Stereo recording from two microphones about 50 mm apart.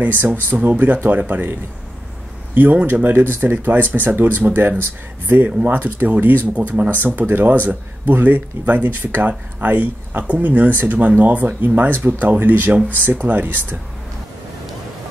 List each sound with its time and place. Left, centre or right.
0.2 s speech: right
2.5 s a man's voice: right
6.5 s speech: right